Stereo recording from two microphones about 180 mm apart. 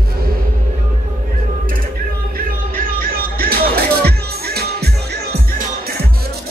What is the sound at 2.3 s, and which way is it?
Music, 50° right (ahead or behind).